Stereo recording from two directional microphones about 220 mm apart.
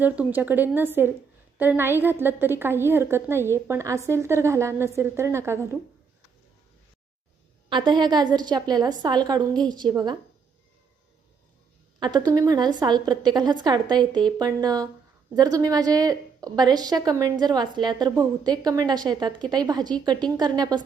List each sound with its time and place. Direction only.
0.0 s a woman's voice: 10° right (ahead or behind)
7.7 s a woman's voice: 20° right (ahead or behind)
11.9 s a woman's voice: 20° right (ahead or behind)